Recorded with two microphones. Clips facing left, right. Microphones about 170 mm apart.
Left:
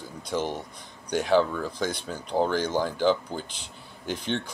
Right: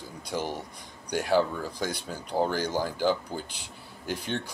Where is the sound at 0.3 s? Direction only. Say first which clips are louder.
Left 3 dB; 10° right (ahead or behind).